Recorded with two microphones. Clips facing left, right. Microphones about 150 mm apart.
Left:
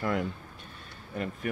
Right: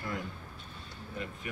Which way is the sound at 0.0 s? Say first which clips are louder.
Left 8 dB; 65° left (ahead or behind).